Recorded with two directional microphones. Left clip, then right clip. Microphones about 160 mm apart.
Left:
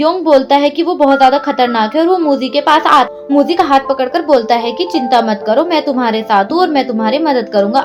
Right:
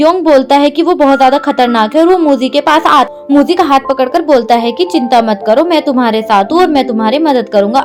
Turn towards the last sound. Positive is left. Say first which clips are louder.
# right 3 dB
turn(degrees=-45)  # may be behind; listen again after turning